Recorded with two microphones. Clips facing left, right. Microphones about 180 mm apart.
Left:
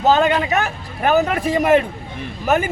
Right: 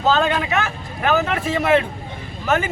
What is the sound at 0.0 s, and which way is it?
Speech, 20° left (ahead or behind).